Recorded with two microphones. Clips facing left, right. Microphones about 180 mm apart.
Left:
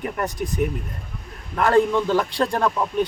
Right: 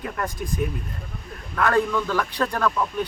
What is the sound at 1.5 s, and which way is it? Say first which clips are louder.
Speech: left 4 dB; 25° left (ahead or behind).